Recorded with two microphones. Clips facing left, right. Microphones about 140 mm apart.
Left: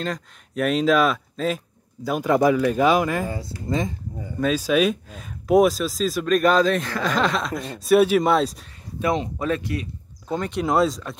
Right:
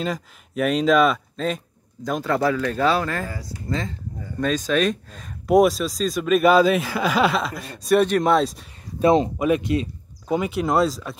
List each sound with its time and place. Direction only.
0.0 s speech: centre (ahead or behind)
9.0 s speech: 35° right (ahead or behind)
9.4 s speech: 20° right (ahead or behind)
10.2 s speech: 10° right (ahead or behind)